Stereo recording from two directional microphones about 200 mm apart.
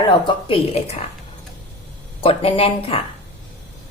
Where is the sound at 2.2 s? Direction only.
30° left (ahead or behind).